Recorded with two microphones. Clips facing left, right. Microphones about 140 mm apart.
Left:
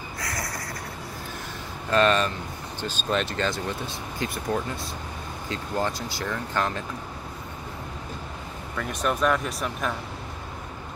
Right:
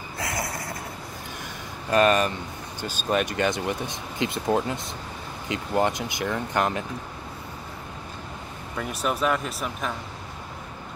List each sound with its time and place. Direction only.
0.2 s a sound: 25° right (ahead or behind)
1.9 s speech: 10° right (ahead or behind)
8.7 s speech: 10° right (ahead or behind)